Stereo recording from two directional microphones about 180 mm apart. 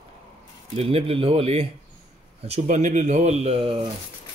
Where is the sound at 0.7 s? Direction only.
30° right (ahead or behind).